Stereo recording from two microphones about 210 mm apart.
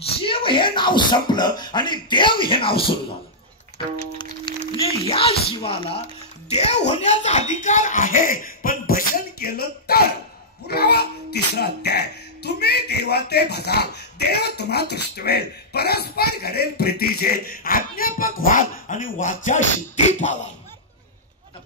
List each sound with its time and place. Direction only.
0.0 s a child's voice: 25° left (ahead or behind)